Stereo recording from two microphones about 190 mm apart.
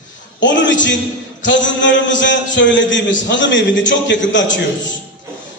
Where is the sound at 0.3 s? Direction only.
70° left (ahead or behind).